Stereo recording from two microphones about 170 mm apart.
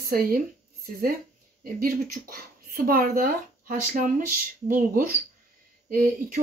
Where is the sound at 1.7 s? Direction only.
60° right (ahead or behind).